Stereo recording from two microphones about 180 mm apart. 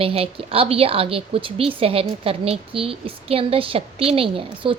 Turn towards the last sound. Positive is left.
turn(degrees=-30)  # may be behind; listen again after turning